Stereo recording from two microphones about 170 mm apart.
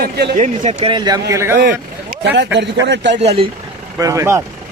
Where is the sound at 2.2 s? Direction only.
90° right.